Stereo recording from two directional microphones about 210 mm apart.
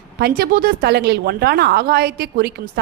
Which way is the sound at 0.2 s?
50° right (ahead or behind).